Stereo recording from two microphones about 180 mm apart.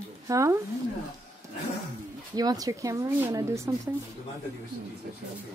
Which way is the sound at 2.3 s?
20° right (ahead or behind).